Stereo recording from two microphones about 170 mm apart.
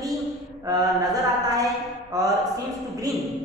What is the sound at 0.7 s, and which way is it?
Mantra, 20° right (ahead or behind).